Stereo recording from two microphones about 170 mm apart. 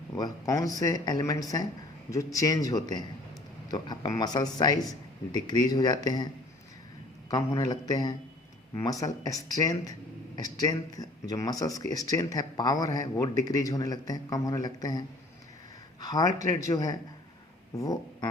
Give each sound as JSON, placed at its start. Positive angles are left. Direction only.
{"t": 0.2, "sound": "speech", "side_deg": 20}
{"t": 7.3, "sound": "speech", "side_deg": 20}